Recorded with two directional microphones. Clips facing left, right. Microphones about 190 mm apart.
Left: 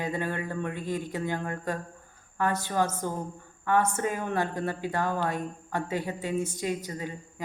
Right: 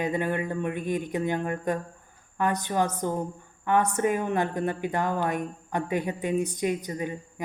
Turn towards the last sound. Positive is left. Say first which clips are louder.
# right 4 dB
turn(degrees=-20)  # may be behind; listen again after turning